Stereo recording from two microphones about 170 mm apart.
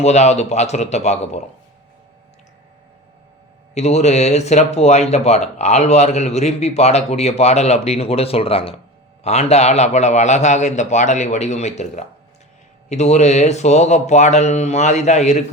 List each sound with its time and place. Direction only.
0.0 s speech: 40° left (ahead or behind)
3.8 s speech: 40° left (ahead or behind)